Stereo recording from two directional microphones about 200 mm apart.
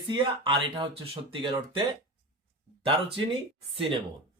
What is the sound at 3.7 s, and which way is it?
Speech, 25° right (ahead or behind).